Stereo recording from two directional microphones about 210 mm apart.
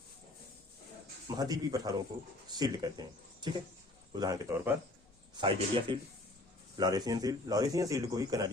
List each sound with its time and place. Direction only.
1.4 s a man's voice: 20° right (ahead or behind)